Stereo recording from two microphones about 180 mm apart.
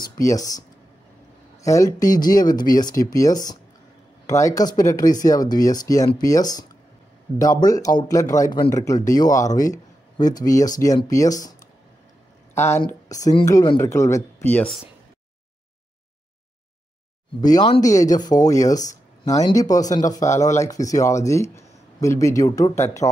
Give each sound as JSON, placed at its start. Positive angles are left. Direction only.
{"t": 0.2, "sound": "speech", "side_deg": 20}
{"t": 2.0, "sound": "speech", "side_deg": 50}
{"t": 2.3, "sound": "speech", "side_deg": 20}
{"t": 12.5, "sound": "a woman's voice", "side_deg": 15}
{"t": 17.4, "sound": "speech", "side_deg": 20}